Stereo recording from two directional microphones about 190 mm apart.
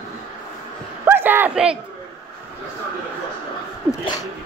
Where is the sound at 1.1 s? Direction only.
10° right (ahead or behind).